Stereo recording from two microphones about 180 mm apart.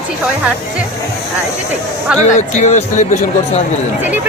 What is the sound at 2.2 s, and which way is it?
Speech, 40° left (ahead or behind).